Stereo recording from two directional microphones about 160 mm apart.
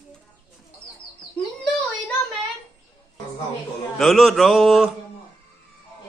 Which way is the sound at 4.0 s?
Centre (ahead or behind).